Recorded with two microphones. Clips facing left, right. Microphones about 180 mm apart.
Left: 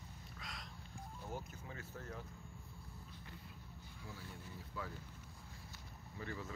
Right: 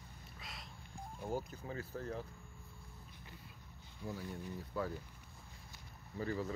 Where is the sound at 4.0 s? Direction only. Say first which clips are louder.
Right 10 dB; 15° right (ahead or behind).